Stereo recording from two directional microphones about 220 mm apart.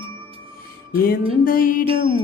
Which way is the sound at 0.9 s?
40° left (ahead or behind).